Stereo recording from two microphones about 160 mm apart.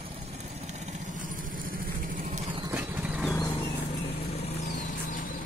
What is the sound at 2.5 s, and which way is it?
Vehicle, 25° right (ahead or behind).